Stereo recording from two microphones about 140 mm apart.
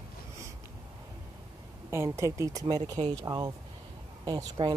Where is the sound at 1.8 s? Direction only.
20° right (ahead or behind).